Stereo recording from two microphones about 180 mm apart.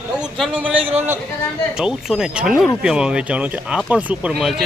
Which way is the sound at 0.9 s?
10° right (ahead or behind).